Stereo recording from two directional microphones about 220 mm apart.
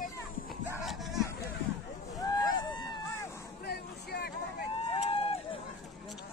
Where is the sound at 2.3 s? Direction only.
20° left (ahead or behind).